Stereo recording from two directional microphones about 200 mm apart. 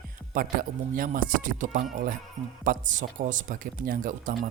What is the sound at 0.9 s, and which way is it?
Speech, 45° right (ahead or behind).